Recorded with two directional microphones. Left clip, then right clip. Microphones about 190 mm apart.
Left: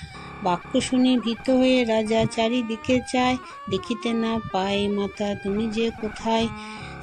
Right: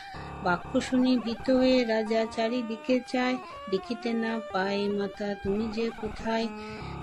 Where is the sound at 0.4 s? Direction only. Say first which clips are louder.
Left 4 dB; 25° left (ahead or behind).